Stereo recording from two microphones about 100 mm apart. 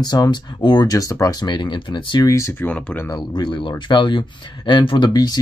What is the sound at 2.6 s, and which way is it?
Speech, 15° left (ahead or behind).